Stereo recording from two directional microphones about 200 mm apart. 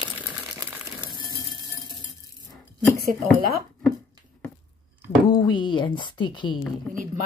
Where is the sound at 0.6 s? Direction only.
20° right (ahead or behind).